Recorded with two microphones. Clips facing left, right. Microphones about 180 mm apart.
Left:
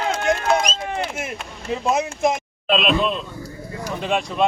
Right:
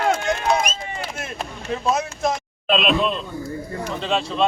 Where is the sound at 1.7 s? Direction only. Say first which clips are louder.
Left 1 dB; 20° left (ahead or behind).